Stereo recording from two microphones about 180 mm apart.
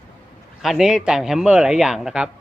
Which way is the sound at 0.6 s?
Centre (ahead or behind).